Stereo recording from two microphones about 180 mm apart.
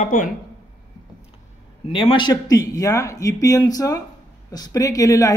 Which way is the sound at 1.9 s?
25° left (ahead or behind).